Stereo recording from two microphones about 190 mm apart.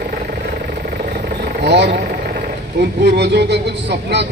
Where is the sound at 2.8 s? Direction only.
65° right (ahead or behind).